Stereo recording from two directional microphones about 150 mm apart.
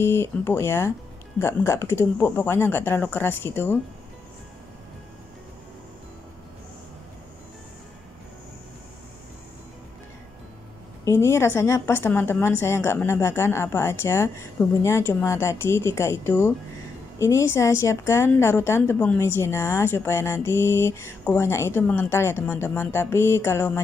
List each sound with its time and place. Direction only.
0.0 s a woman's voice: 15° left (ahead or behind)
11.1 s a woman's voice: 20° left (ahead or behind)